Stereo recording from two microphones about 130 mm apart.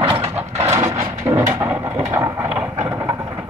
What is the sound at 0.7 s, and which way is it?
Mechanisms, 20° right (ahead or behind).